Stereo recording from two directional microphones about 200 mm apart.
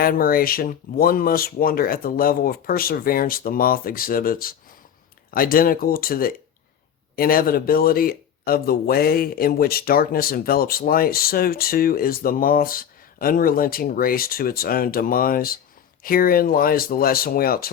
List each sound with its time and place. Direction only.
0.0 s speech: 45° left (ahead or behind)